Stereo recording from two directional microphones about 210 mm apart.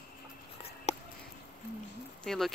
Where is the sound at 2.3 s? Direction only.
Centre (ahead or behind).